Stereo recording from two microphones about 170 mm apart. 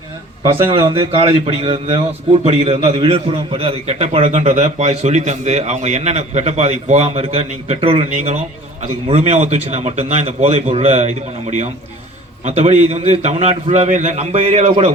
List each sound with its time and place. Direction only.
0.4 s a man's voice: 30° right (ahead or behind)